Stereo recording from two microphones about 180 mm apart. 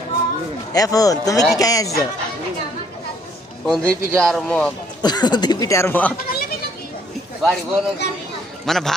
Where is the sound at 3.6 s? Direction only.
Centre (ahead or behind).